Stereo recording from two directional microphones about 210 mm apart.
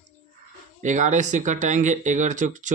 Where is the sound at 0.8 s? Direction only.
35° right (ahead or behind).